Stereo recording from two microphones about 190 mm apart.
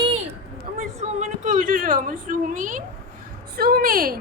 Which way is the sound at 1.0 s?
40° right (ahead or behind).